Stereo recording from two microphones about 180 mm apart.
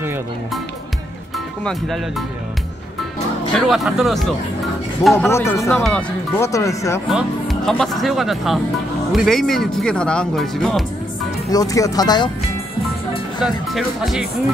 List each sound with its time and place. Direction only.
1.6 s speech: centre (ahead or behind)
3.5 s speech: centre (ahead or behind)
5.1 s speech: 15° left (ahead or behind)
6.5 s speech: 15° left (ahead or behind)
7.1 s speech: centre (ahead or behind)
11.5 s speech: 20° left (ahead or behind)
13.4 s speech: centre (ahead or behind)